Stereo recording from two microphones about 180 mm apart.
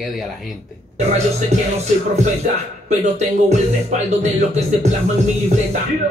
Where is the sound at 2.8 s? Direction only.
40° right (ahead or behind).